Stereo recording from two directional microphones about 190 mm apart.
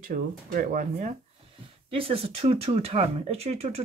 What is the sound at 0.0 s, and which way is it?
Speech, 45° right (ahead or behind).